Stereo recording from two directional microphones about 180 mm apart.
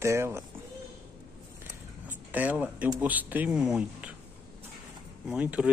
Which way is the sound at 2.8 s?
10° right (ahead or behind).